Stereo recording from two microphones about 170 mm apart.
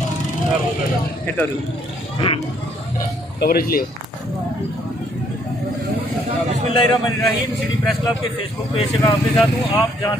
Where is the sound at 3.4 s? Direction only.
60° left (ahead or behind).